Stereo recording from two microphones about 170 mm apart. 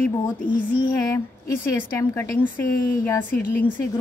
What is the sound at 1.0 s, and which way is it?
A woman's voice, 15° left (ahead or behind).